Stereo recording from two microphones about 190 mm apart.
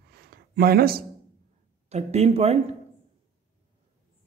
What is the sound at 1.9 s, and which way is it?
Speech, 35° right (ahead or behind).